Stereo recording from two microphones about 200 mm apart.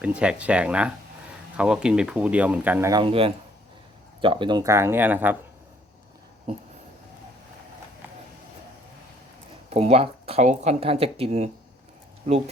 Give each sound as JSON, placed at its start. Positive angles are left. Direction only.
{"t": 0.0, "sound": "speech", "side_deg": -5}
{"t": 3.0, "sound": "speech", "side_deg": -25}
{"t": 9.6, "sound": "speech", "side_deg": -30}